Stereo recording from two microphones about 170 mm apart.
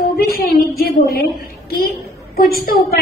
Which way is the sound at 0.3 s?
60° left (ahead or behind).